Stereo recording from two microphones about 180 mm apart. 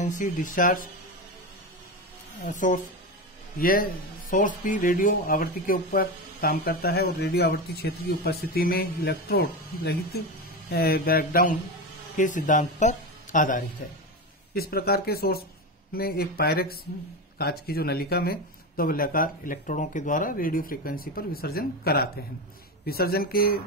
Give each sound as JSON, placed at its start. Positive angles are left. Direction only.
{"t": 0.0, "sound": "speech", "side_deg": 45}
{"t": 2.4, "sound": "speech", "side_deg": 45}
{"t": 10.7, "sound": "speech", "side_deg": 60}
{"t": 14.5, "sound": "speech", "side_deg": 60}